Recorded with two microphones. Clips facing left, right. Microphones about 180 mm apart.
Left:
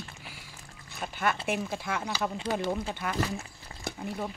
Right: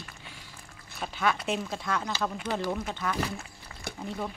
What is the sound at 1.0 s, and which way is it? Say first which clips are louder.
Speech: right 1 dB; 5° left (ahead or behind).